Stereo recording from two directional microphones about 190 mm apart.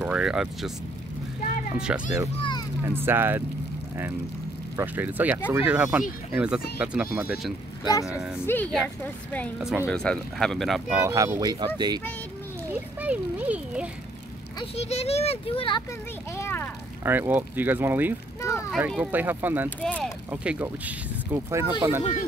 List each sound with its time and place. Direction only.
0.0 s speech: 5° right (ahead or behind)
1.8 s speech: 5° right (ahead or behind)
4.7 s speech: 10° right (ahead or behind)
8.5 s a woman's voice: 10° left (ahead or behind)
9.6 s speech: 5° right (ahead or behind)
11.0 s speech: 15° right (ahead or behind)
13.0 s speech: 5° right (ahead or behind)
14.6 s speech: 35° left (ahead or behind)
16.3 s a sound: 10° left (ahead or behind)
17.0 s speech: 10° right (ahead or behind)
18.4 s a sound: 15° left (ahead or behind)
18.7 s speech: 5° right (ahead or behind)
19.8 s speech: 5° left (ahead or behind)
20.2 s speech: 10° right (ahead or behind)